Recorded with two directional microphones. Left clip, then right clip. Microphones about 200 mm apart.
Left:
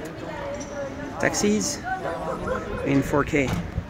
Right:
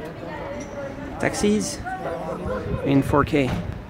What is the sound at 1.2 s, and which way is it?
Speech, 15° right (ahead or behind).